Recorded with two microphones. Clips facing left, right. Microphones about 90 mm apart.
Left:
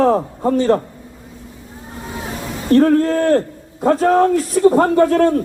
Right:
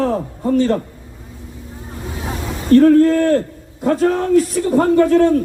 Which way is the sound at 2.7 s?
40° left (ahead or behind).